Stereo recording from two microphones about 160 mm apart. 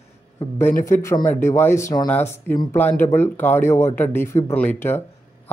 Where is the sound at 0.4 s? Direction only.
15° left (ahead or behind).